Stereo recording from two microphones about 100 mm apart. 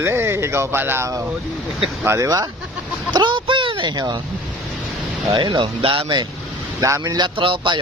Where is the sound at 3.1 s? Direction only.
50° right (ahead or behind).